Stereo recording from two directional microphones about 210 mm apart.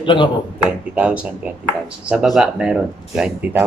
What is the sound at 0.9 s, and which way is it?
Speech, 5° right (ahead or behind).